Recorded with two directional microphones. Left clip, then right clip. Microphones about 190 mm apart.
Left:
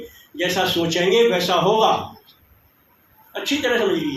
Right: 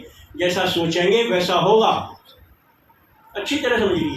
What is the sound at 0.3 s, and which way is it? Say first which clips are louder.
A man's voice: even; 55° left (ahead or behind).